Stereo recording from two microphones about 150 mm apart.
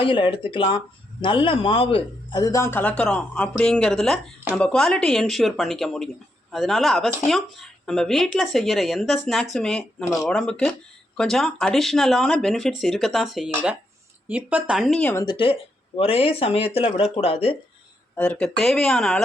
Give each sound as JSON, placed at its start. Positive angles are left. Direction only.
{"t": 0.0, "sound": "a woman's voice", "side_deg": 35}
{"t": 15.2, "sound": "speech", "side_deg": 35}
{"t": 18.2, "sound": "speech", "side_deg": 5}